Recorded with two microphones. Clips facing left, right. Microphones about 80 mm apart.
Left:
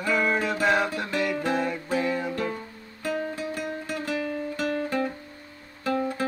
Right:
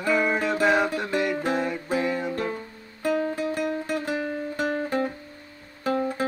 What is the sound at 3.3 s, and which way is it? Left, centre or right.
Music, right.